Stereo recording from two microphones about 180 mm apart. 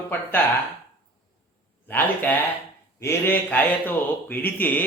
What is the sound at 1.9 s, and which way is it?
Speech, 10° left (ahead or behind).